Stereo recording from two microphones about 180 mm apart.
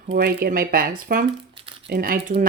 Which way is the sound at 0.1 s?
60° right (ahead or behind).